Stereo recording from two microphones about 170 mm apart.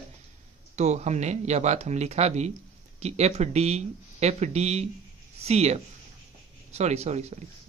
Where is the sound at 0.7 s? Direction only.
40° right (ahead or behind).